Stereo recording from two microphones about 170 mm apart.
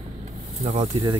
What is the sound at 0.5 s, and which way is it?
Speech, 35° right (ahead or behind).